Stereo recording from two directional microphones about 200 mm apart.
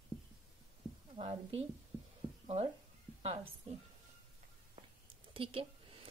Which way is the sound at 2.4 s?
30° right (ahead or behind).